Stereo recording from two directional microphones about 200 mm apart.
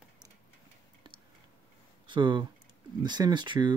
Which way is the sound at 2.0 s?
25° right (ahead or behind).